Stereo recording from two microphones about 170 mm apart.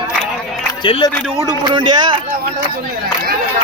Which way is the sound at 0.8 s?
30° left (ahead or behind).